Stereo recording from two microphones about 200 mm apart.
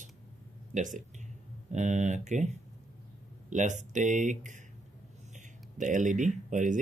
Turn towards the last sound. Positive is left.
turn(degrees=-40)  # may be behind; listen again after turning